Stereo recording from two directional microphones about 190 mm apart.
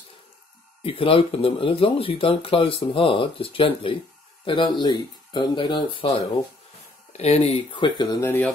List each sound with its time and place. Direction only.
0.8 s speech: 30° left (ahead or behind)